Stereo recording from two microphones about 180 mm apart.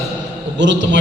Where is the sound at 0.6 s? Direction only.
90° right.